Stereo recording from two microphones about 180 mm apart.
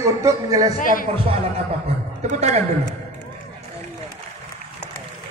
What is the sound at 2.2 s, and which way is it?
Speech, 40° right (ahead or behind).